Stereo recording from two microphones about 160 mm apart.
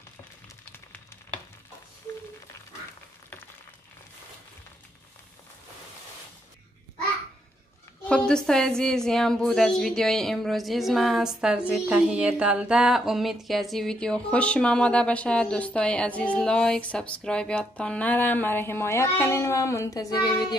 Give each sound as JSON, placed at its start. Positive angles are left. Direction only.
{"t": 8.0, "sound": "a woman's voice", "side_deg": 5}